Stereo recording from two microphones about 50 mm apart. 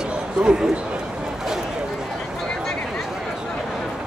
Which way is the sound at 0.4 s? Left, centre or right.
Centre.